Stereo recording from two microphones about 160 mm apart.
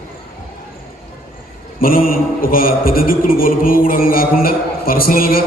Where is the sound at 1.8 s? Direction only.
65° left (ahead or behind).